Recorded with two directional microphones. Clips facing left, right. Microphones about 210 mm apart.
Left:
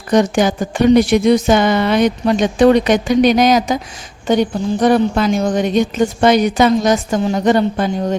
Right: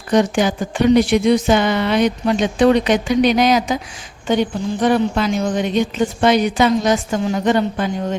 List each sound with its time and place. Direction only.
0.1 s a woman's voice: 45° left (ahead or behind)